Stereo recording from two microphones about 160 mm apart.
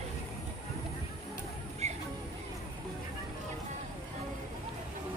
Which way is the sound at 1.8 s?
45° right (ahead or behind).